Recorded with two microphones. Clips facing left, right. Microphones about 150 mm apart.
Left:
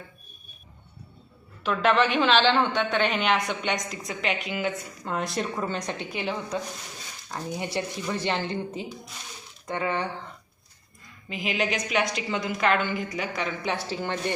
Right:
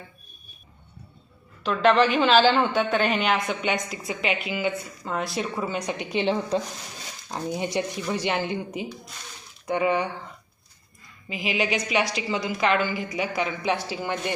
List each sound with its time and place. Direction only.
1.6 s a woman's voice: centre (ahead or behind)
11.3 s a woman's voice: 5° right (ahead or behind)